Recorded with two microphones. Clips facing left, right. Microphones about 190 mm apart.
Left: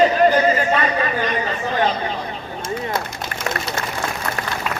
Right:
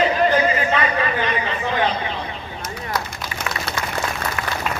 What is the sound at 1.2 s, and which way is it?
Chatter, 40° left (ahead or behind).